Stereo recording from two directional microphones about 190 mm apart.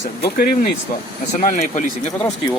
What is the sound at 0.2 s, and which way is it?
Speech, 50° left (ahead or behind).